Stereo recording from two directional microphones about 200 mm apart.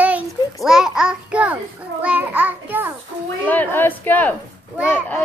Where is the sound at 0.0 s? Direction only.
5° right (ahead or behind).